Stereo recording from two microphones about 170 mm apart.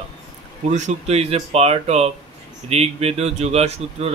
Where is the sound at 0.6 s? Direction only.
40° right (ahead or behind).